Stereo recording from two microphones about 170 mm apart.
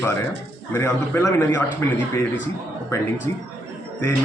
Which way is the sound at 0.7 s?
15° left (ahead or behind).